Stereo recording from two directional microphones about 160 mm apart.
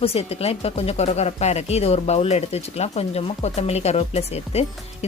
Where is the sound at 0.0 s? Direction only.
40° left (ahead or behind).